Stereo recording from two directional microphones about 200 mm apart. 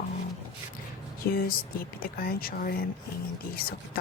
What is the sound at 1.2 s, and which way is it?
Speech, 50° left (ahead or behind).